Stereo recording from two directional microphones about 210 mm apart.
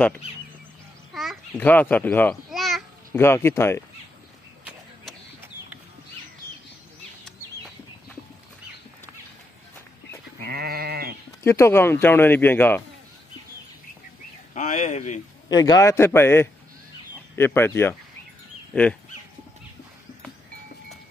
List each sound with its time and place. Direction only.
1.1 s babbling: centre (ahead or behind)
3.2 s speech: 10° left (ahead or behind)
4.6 s a sound: 5° right (ahead or behind)
7.2 s bird flight: centre (ahead or behind)
10.4 s sheep: 45° right (ahead or behind)
11.4 s speech: 10° left (ahead or behind)
14.5 s speech: 35° left (ahead or behind)
15.4 s speech: 20° left (ahead or behind)